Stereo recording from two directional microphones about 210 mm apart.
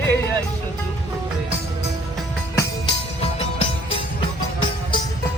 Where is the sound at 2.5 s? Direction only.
25° left (ahead or behind).